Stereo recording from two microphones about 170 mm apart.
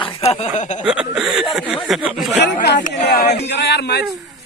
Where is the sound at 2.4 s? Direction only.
85° left.